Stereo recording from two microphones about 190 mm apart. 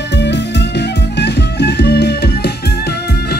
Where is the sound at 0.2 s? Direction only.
65° left (ahead or behind).